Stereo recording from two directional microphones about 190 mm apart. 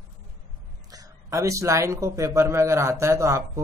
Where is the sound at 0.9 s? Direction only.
15° right (ahead or behind).